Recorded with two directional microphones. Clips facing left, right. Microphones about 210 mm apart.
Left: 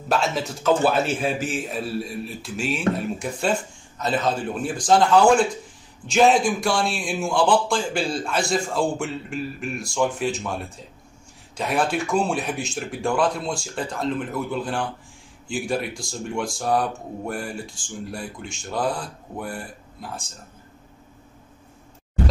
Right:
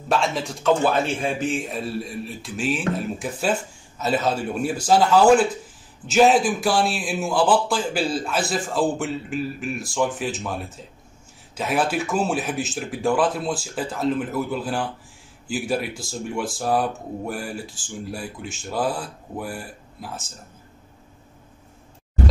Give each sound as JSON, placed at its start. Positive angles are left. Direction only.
{"t": 0.1, "sound": "a man's voice", "side_deg": 0}